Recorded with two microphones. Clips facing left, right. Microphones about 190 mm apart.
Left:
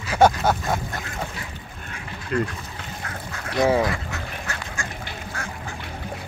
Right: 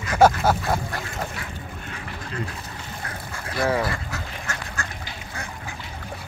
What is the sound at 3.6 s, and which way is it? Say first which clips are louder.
Speech: left 4 dB; 15° left (ahead or behind).